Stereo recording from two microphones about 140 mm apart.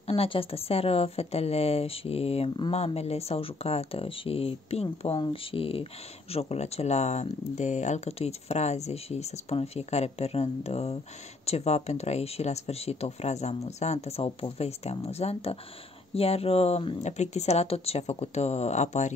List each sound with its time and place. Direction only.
0.0 s a woman's voice: 45° left (ahead or behind)